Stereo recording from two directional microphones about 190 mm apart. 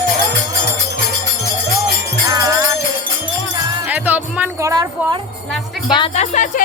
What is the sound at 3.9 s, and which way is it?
Music, 10° right (ahead or behind).